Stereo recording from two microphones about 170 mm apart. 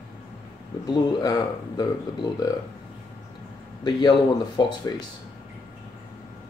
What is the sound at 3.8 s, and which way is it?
Speech, 25° left (ahead or behind).